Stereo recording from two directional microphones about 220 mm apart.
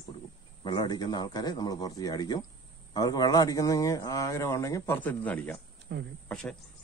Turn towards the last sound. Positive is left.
turn(degrees=0)  # may be behind; listen again after turning